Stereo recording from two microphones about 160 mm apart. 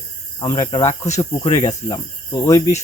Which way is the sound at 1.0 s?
45° left (ahead or behind).